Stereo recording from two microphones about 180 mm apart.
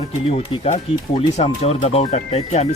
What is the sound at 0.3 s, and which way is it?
Speech, 35° left (ahead or behind).